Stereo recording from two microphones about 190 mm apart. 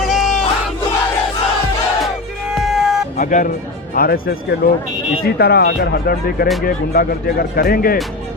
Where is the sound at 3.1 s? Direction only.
45° left (ahead or behind).